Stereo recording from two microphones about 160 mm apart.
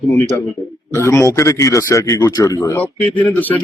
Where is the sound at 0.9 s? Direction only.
15° left (ahead or behind).